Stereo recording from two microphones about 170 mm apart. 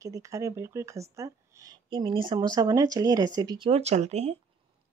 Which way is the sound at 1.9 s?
30° right (ahead or behind).